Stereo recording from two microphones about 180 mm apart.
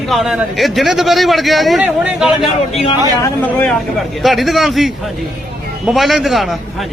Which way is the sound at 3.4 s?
10° left (ahead or behind).